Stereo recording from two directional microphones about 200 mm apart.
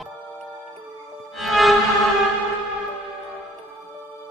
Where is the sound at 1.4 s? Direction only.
Centre (ahead or behind).